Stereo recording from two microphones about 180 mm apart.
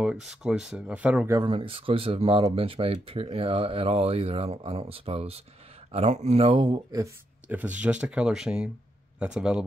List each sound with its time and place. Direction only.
0.0 s speech: 5° right (ahead or behind)
1.3 s speech: 25° right (ahead or behind)
7.4 s speech: 10° right (ahead or behind)